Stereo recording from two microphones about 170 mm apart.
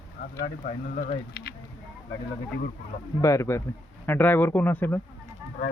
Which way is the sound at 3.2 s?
15° left (ahead or behind).